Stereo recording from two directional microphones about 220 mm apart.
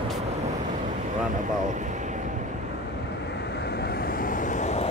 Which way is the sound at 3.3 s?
50° left (ahead or behind).